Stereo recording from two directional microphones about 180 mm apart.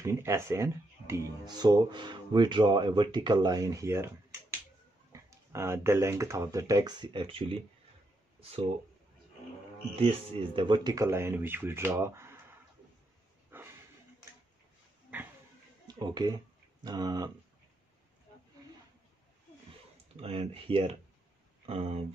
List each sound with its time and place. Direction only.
0.0 s speech: 15° right (ahead or behind)
5.1 s speech: 15° right (ahead or behind); by 8.6 s 35° right (ahead or behind)
9.9 s speech: 30° right (ahead or behind); by 12.5 s 15° right (ahead or behind)
13.5 s a sound: 10° right (ahead or behind)
15.1 s a sound: 10° right (ahead or behind)
15.9 s speech: 20° right (ahead or behind)
20.2 s speech: 30° right (ahead or behind)